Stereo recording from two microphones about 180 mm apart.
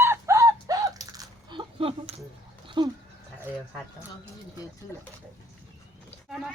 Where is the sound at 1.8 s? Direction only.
35° right (ahead or behind).